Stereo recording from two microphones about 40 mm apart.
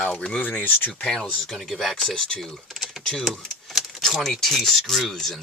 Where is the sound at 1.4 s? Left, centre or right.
Centre.